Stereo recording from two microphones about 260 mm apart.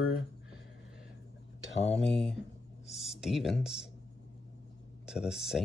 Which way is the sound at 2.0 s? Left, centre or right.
Centre.